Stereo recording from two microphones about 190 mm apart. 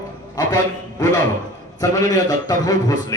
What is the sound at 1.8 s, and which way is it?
A man's voice, 20° left (ahead or behind).